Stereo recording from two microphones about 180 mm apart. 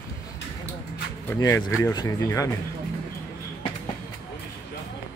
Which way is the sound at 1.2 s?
15° left (ahead or behind).